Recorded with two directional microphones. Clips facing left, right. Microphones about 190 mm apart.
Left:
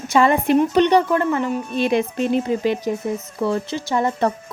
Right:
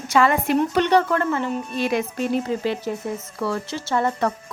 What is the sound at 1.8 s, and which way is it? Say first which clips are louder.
A woman's voice: left 4 dB; 25° left (ahead or behind).